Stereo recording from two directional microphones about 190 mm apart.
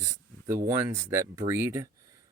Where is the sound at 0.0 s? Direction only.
15° right (ahead or behind).